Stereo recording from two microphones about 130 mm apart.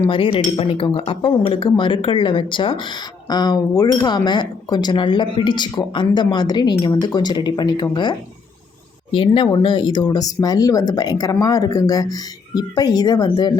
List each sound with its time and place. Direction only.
0.1 s speech: 40° left (ahead or behind)
9.1 s speech: 40° left (ahead or behind)